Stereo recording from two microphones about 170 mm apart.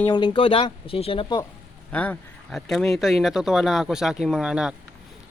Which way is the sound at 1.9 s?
10° left (ahead or behind).